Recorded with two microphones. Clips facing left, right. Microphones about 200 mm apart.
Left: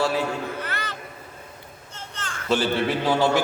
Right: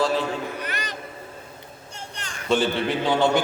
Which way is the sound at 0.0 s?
10° left (ahead or behind).